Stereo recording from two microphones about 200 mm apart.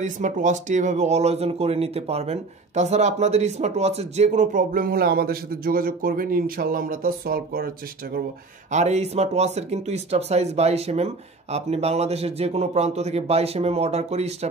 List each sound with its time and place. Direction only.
0.0 s speech: 40° right (ahead or behind)
8.7 s speech: 35° right (ahead or behind)